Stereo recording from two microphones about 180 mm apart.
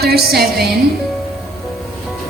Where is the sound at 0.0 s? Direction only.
60° right (ahead or behind).